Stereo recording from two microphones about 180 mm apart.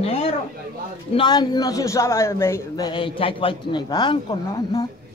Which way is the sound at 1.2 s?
25° left (ahead or behind).